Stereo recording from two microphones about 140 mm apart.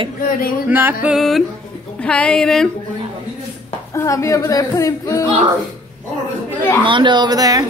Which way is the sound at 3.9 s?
20° left (ahead or behind).